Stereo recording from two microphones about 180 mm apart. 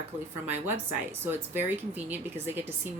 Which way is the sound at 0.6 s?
10° right (ahead or behind).